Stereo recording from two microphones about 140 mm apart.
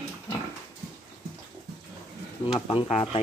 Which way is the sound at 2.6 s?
45° left (ahead or behind).